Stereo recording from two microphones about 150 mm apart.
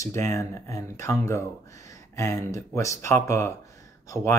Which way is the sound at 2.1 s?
20° left (ahead or behind).